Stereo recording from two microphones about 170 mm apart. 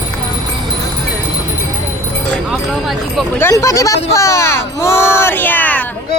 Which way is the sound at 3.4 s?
15° left (ahead or behind).